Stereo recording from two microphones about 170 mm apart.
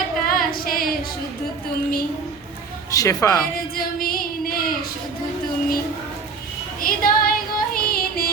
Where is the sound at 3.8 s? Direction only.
60° left (ahead or behind).